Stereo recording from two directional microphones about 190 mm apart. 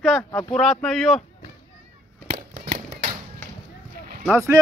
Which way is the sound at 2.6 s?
50° right (ahead or behind).